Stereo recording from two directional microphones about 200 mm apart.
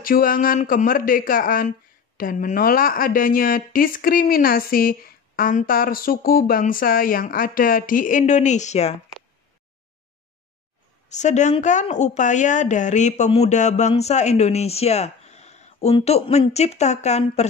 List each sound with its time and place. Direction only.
0.0 s a woman's voice: 45° left (ahead or behind)
11.1 s a woman's voice: 35° left (ahead or behind)